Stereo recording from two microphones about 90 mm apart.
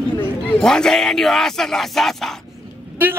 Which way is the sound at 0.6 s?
5° left (ahead or behind).